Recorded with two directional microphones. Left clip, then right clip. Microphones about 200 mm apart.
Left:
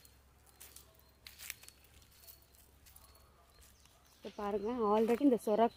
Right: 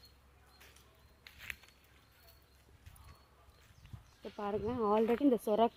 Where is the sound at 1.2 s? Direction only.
15° left (ahead or behind).